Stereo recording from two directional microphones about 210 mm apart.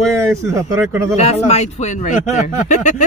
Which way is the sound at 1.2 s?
30° left (ahead or behind).